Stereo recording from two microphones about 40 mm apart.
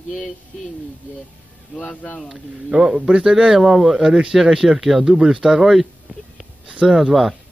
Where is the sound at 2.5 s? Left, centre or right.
Centre.